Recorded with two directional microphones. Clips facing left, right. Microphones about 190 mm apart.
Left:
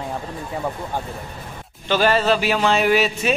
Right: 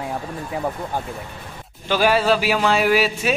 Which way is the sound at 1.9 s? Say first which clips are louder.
Even; 10° right (ahead or behind).